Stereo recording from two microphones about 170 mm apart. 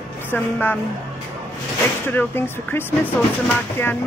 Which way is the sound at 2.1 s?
10° left (ahead or behind).